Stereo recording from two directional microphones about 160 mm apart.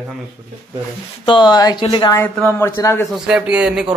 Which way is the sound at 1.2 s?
30° left (ahead or behind).